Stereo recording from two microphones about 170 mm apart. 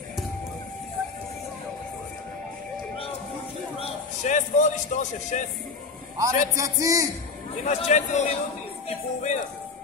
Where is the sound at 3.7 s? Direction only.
40° left (ahead or behind).